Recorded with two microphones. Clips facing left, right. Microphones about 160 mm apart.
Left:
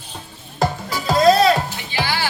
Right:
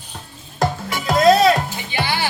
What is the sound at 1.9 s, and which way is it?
Music, 20° right (ahead or behind).